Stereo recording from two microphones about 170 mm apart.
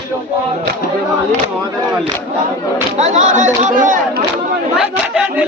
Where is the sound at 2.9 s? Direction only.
45° right (ahead or behind).